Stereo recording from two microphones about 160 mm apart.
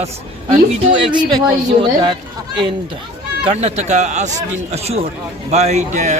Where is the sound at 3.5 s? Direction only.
40° right (ahead or behind).